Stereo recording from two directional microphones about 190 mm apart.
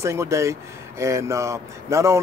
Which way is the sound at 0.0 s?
15° right (ahead or behind).